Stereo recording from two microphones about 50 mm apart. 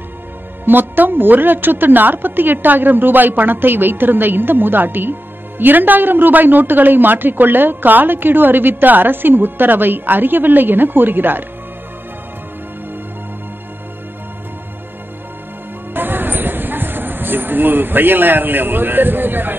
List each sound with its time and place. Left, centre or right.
0.7 s a man's voice: right
15.9 s music: right